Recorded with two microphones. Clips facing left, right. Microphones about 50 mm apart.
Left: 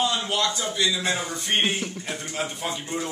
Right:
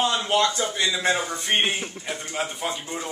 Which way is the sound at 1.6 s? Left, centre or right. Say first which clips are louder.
Even; centre.